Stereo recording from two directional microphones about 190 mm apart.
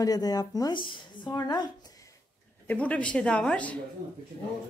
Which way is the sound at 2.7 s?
10° left (ahead or behind).